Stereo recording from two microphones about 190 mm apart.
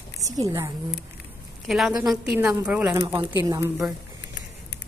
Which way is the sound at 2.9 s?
25° right (ahead or behind).